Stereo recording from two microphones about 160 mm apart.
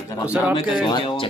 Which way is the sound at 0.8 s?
30° left (ahead or behind).